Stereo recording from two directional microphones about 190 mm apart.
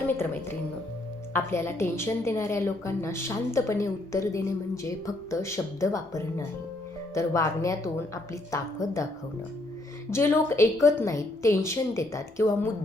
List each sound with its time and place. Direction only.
1.3 s a woman's voice: 15° left (ahead or behind)
10.1 s a woman's voice: 15° left (ahead or behind)